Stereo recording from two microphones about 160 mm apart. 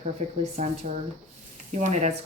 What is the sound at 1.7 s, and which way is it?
Speech, 50° right (ahead or behind).